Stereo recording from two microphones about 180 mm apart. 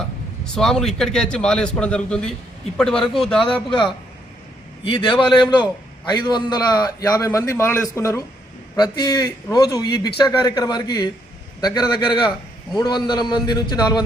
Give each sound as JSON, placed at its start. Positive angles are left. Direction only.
{"t": 0.5, "sound": "a man's voice", "side_deg": 0}
{"t": 3.4, "sound": "a man's voice", "side_deg": 30}
{"t": 4.9, "sound": "a man's voice", "side_deg": 25}